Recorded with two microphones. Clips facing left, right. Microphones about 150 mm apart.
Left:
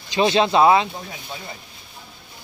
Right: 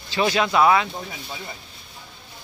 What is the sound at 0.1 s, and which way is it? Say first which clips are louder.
Speech: left 3 dB; 25° left (ahead or behind).